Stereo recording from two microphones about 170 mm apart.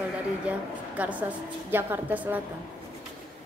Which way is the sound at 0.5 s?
10° right (ahead or behind).